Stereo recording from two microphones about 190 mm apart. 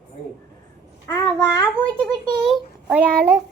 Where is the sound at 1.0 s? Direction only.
15° left (ahead or behind).